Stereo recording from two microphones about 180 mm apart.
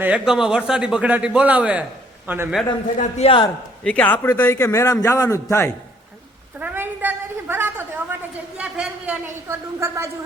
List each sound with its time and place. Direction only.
0.0 s a man's voice: 5° right (ahead or behind)
3.0 s a man's voice: 35° left (ahead or behind)
3.8 s a man's voice: 10° left (ahead or behind)
6.6 s a sound: 10° right (ahead or behind)